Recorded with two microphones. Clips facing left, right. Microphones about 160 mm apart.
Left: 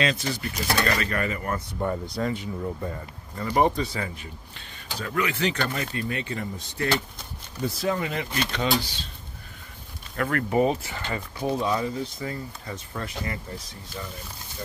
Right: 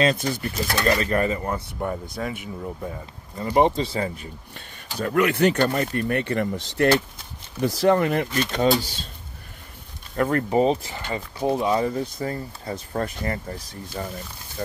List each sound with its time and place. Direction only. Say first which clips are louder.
0.0 s speech: right 5 dB; 50° right (ahead or behind)
0.4 s speech: right 1 dB; 30° right (ahead or behind)
1.8 s speech: left 3 dB; 10° right (ahead or behind)
3.3 s speech: right 3 dB; 20° right (ahead or behind)
4.2 s speech: right 3 dB; 45° right (ahead or behind); by 6.9 s 65° right (ahead or behind)
7.6 s speech: right 8 dB; 75° right (ahead or behind); by 9.0 s 40° right (ahead or behind)
10.1 s speech: right 3 dB; 30° right (ahead or behind)
11.8 s speech: right 4 dB; 45° right (ahead or behind)